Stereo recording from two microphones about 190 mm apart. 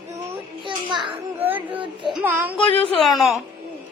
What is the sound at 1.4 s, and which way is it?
Child singing, 10° right (ahead or behind).